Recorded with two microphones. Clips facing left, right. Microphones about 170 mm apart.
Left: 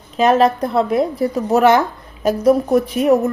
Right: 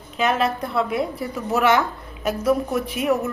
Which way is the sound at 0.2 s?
35° left (ahead or behind).